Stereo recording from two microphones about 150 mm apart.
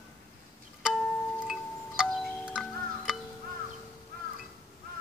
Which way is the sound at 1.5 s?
Centre (ahead or behind).